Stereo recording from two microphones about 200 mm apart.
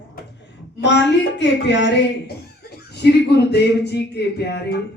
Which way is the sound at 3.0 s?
55° left (ahead or behind).